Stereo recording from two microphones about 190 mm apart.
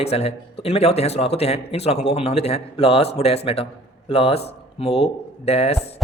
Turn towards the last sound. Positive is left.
turn(degrees=30)  # may be behind; listen again after turning